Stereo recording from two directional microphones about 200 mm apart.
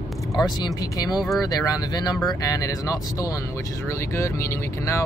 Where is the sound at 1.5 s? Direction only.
20° left (ahead or behind).